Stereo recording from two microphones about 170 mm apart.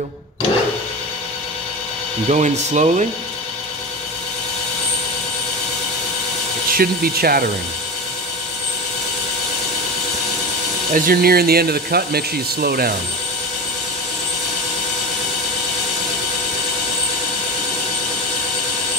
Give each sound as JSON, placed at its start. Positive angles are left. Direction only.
{"t": 2.2, "sound": "speech", "side_deg": -45}
{"t": 6.7, "sound": "speech", "side_deg": -60}
{"t": 10.9, "sound": "speech", "side_deg": -55}